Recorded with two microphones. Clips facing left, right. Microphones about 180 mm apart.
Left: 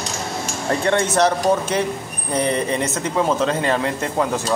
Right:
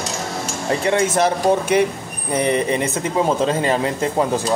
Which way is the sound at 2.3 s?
15° right (ahead or behind).